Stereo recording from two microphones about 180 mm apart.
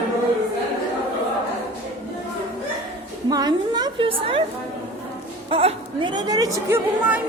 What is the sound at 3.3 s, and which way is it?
A woman's voice, 20° right (ahead or behind).